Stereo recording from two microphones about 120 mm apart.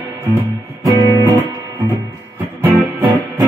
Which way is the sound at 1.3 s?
20° right (ahead or behind).